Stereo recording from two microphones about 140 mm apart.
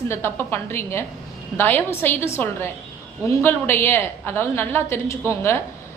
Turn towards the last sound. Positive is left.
turn(degrees=20)  # may be behind; listen again after turning